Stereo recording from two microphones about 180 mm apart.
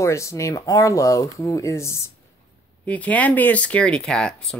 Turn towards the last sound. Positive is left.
turn(degrees=5)  # may be behind; listen again after turning